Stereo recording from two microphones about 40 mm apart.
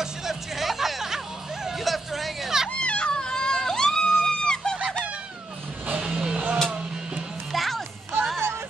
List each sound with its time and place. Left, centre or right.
0.0 s music: centre
2.7 s a sound: left; by 4.7 s centre
5.9 s music: centre
6.3 s music: right
7.5 s music: centre